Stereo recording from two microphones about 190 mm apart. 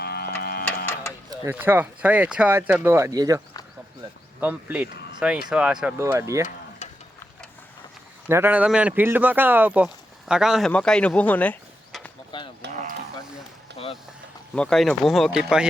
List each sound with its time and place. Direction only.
0.0 s cattle: 55° left (ahead or behind)
1.3 s speech: 10° right (ahead or behind)
4.4 s speech: 10° right (ahead or behind)
6.8 s a sound: 35° left (ahead or behind)
8.3 s speech: 10° right (ahead or behind); by 12.1 s 5° left (ahead or behind)
12.3 s a sound: 25° left (ahead or behind)
14.5 s speech: 5° left (ahead or behind)